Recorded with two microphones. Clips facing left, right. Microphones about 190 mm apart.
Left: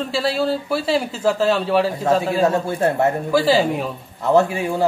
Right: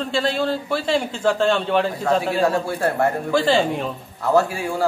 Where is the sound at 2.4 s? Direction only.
20° left (ahead or behind).